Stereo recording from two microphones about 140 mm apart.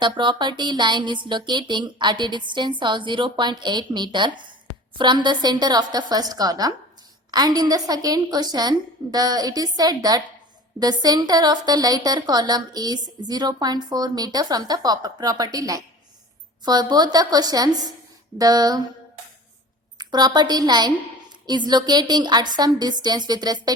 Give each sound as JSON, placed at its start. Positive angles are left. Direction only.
{"t": 0.0, "sound": "a woman's voice", "side_deg": -35}
{"t": 20.0, "sound": "speech", "side_deg": -30}